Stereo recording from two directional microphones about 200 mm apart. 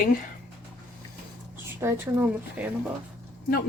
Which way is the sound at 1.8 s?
10° right (ahead or behind).